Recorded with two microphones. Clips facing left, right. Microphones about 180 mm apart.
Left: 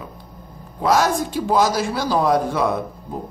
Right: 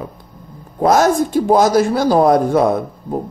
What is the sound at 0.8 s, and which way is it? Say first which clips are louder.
Speech: right 5 dB; 45° right (ahead or behind).